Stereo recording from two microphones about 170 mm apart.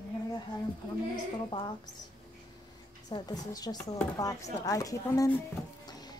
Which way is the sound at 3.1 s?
20° left (ahead or behind).